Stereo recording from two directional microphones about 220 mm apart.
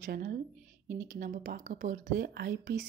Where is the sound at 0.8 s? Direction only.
40° right (ahead or behind).